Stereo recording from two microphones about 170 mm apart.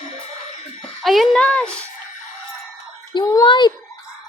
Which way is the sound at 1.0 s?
Centre (ahead or behind).